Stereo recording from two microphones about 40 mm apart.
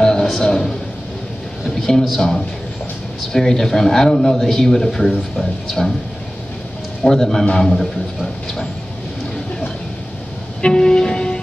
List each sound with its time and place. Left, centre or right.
0.0 s a sound: centre
0.4 s a man's voice: centre
1.8 s a man's voice: centre
7.0 s speech: centre
10.6 s music: centre